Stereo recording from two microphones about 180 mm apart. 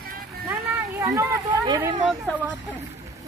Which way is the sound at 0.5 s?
15° right (ahead or behind).